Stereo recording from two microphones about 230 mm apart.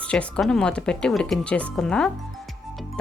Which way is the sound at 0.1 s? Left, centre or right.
Centre.